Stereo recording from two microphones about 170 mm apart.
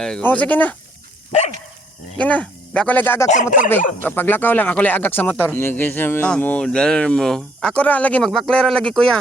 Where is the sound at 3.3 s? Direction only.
45° left (ahead or behind).